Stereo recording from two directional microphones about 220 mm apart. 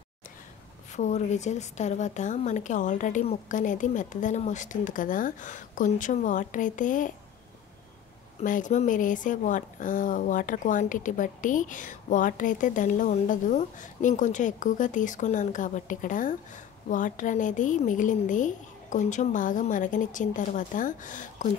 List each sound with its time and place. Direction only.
0.9 s speech: 30° left (ahead or behind)
8.4 s speech: 35° left (ahead or behind)